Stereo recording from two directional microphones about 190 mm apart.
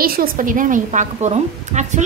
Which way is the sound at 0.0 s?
50° right (ahead or behind).